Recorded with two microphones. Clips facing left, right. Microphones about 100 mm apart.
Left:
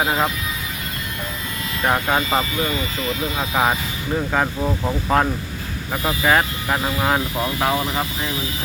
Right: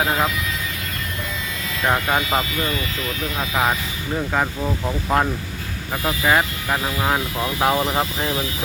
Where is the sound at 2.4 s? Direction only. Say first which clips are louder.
Left 1 dB; 30° left (ahead or behind).